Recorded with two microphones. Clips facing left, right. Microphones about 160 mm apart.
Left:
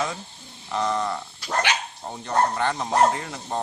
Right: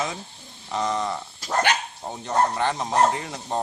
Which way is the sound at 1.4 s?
40° right (ahead or behind).